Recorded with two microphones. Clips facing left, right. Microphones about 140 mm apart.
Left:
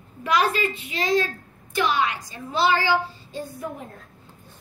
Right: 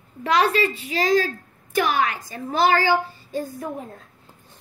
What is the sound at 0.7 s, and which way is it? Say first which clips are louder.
Speech: right 4 dB; 35° right (ahead or behind).